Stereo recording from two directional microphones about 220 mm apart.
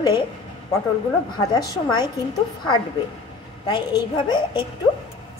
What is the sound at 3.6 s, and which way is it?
A woman's voice, 20° left (ahead or behind).